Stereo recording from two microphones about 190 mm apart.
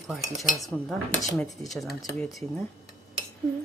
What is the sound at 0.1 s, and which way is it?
Cutlery, centre (ahead or behind).